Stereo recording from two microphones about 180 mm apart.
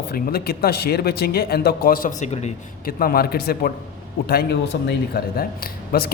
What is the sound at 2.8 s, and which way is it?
Speech, 55° left (ahead or behind).